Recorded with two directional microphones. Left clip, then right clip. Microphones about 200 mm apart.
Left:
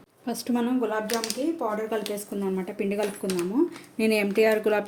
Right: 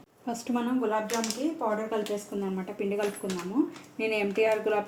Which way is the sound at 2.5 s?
50° left (ahead or behind).